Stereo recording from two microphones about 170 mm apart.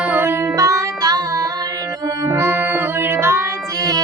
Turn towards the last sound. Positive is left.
turn(degrees=-20)  # may be behind; listen again after turning